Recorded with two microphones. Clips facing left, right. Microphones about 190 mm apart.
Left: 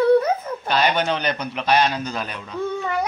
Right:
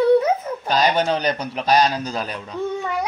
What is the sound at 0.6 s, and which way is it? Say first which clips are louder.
A man's voice: right 2 dB; 40° right (ahead or behind).